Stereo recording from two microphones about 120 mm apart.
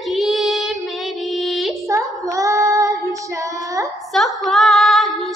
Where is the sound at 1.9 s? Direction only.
25° right (ahead or behind).